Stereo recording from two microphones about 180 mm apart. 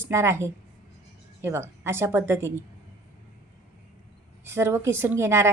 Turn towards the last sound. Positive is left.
turn(degrees=-15)  # may be behind; listen again after turning